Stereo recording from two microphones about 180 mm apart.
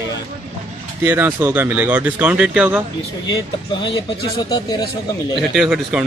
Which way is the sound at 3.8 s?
25° left (ahead or behind).